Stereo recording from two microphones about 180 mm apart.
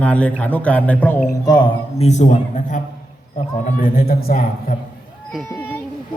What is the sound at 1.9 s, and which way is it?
A man's voice, 40° left (ahead or behind).